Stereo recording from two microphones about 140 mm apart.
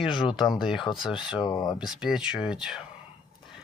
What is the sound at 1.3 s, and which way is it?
Speech, 30° left (ahead or behind).